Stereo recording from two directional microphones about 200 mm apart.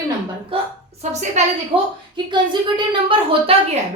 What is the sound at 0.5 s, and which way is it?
Speech, 25° right (ahead or behind).